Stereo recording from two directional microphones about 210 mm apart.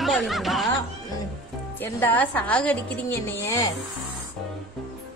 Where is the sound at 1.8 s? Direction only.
10° left (ahead or behind).